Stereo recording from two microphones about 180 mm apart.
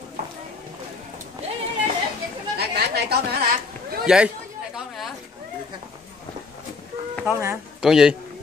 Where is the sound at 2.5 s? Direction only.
60° right (ahead or behind).